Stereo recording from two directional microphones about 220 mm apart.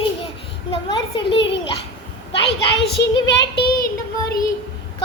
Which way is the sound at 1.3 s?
55° left (ahead or behind).